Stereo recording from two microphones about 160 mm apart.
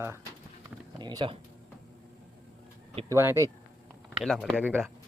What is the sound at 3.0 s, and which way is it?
Speech, 15° right (ahead or behind).